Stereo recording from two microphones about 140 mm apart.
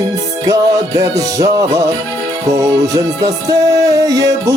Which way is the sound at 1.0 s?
25° right (ahead or behind).